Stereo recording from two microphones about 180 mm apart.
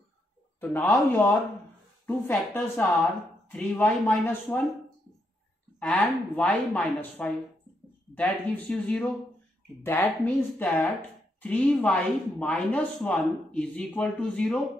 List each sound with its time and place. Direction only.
0.6 s speech: 10° left (ahead or behind)
5.8 s speech: 5° left (ahead or behind)